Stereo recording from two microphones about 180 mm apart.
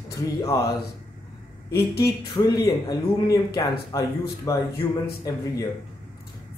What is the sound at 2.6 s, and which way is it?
Speech, 20° left (ahead or behind).